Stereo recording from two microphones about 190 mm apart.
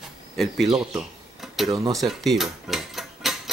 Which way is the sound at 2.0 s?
Centre (ahead or behind).